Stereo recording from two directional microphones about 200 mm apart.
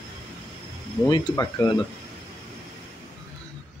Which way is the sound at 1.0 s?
15° left (ahead or behind).